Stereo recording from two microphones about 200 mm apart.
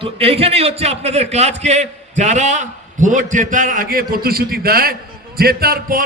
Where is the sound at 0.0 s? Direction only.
30° right (ahead or behind).